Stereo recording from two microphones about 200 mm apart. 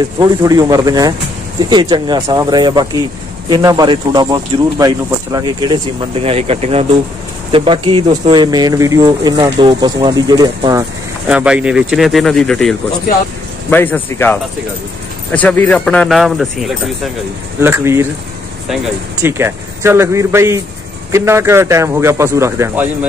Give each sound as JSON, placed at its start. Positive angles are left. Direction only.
{"t": 0.2, "sound": "a man's voice", "side_deg": -20}
{"t": 11.2, "sound": "speech", "side_deg": -5}
{"t": 17.6, "sound": "a man's voice", "side_deg": -15}
{"t": 19.2, "sound": "a man's voice", "side_deg": -10}